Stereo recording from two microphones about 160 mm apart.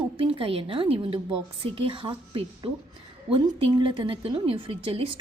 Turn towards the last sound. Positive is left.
turn(degrees=-35)  # may be behind; listen again after turning